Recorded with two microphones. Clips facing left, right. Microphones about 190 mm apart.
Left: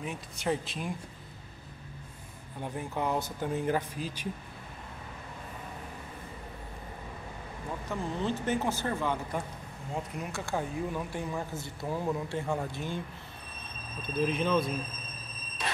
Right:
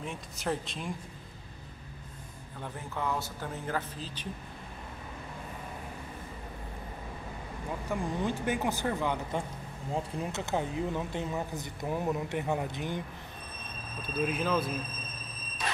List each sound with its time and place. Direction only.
0.0 s speech: centre (ahead or behind)
2.6 s speech: 15° left (ahead or behind)
7.9 s speech: 15° right (ahead or behind)
14.2 s speech: 5° right (ahead or behind)